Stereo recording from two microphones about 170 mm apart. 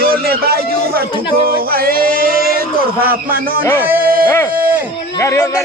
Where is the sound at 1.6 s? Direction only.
60° right (ahead or behind).